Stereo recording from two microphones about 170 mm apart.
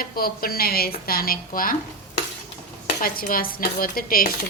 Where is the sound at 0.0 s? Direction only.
60° left (ahead or behind).